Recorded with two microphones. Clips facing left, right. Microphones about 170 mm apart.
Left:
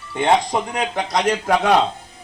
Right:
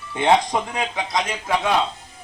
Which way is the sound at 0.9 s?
80° left.